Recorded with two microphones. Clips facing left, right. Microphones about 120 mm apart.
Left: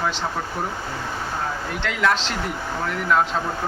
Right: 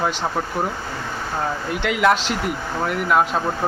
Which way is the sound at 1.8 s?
15° right (ahead or behind).